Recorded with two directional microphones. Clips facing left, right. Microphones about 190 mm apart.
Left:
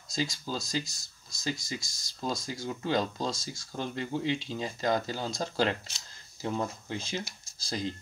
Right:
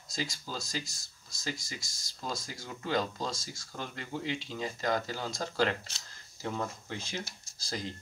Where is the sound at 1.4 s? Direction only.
20° left (ahead or behind).